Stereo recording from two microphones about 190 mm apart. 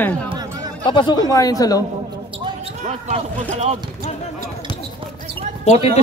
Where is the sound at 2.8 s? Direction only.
35° right (ahead or behind).